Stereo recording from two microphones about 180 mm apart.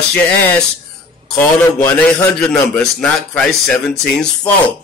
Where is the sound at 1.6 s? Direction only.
10° left (ahead or behind).